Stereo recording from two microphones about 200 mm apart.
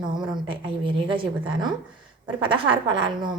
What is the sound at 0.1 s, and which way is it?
Speech, 20° right (ahead or behind).